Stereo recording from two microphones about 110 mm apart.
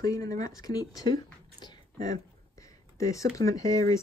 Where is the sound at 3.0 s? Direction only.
30° left (ahead or behind).